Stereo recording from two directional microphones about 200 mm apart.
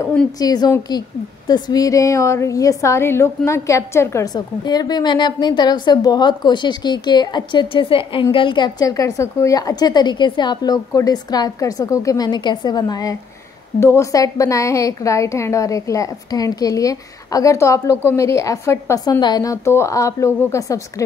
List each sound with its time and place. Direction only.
0.0 s a woman's voice: 5° left (ahead or behind)
0.4 s a woman's voice: 20° left (ahead or behind)